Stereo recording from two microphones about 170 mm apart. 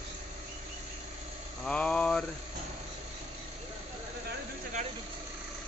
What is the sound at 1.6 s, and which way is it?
Mantra, 5° left (ahead or behind).